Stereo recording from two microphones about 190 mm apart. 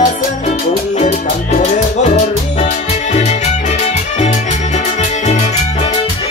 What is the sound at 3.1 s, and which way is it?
Music, 35° left (ahead or behind).